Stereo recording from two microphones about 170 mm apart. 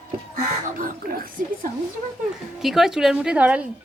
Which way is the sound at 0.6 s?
55° right (ahead or behind).